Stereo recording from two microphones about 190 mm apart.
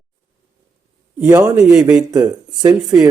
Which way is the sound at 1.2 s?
10° right (ahead or behind).